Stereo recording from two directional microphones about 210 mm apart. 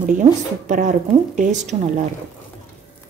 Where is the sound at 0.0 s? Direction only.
35° right (ahead or behind).